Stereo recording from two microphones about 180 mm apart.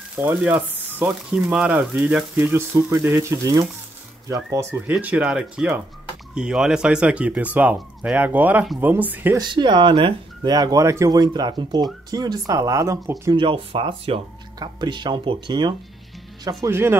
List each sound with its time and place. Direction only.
0.2 s speech: 10° right (ahead or behind)
4.7 s speech: 10° right (ahead or behind)
9.4 s speech: 25° right (ahead or behind)